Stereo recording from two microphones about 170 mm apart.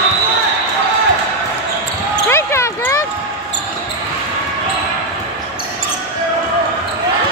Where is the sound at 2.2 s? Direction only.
15° left (ahead or behind).